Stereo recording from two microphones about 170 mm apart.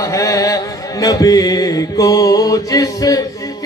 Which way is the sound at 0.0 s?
20° left (ahead or behind).